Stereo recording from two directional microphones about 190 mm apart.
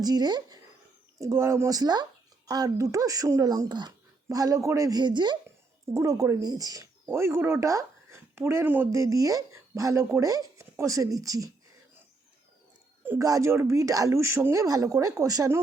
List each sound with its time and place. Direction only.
0.0 s speech: 20° right (ahead or behind)
13.1 s speech: 15° right (ahead or behind)